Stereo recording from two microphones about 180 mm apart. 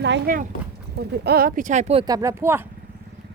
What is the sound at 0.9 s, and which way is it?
Speech, 65° right (ahead or behind).